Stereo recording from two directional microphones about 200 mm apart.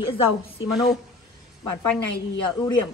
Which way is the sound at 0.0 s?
25° left (ahead or behind).